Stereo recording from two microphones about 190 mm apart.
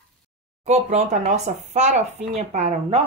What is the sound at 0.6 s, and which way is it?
Speech, 35° right (ahead or behind).